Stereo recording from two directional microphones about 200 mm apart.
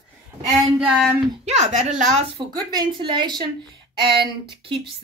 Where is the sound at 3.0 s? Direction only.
20° right (ahead or behind).